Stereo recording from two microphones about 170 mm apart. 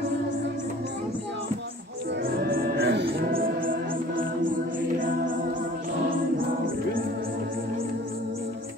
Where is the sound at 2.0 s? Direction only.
75° right (ahead or behind).